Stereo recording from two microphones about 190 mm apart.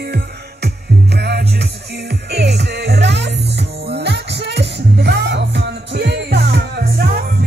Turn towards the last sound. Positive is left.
turn(degrees=-55)  # may be behind; listen again after turning